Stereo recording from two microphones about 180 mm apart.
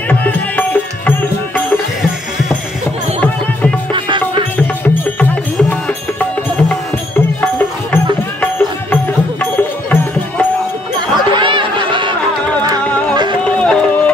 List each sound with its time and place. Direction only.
0.1 s music: 10° left (ahead or behind)
4.8 s music: 10° left (ahead or behind)
11.3 s music: 25° right (ahead or behind)
13.4 s run: 5° left (ahead or behind)